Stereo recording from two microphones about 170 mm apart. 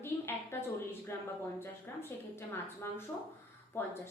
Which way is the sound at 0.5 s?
15° left (ahead or behind).